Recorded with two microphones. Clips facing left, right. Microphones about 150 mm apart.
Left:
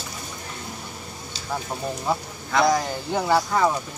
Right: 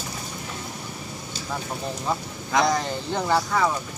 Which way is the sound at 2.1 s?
5° left (ahead or behind).